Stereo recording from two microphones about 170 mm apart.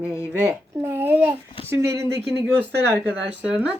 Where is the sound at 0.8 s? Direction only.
10° right (ahead or behind).